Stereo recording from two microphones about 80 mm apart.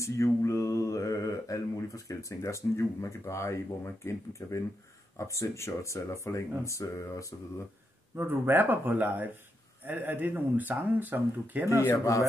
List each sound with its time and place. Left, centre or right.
0.0 s speech: left
8.2 s speech: right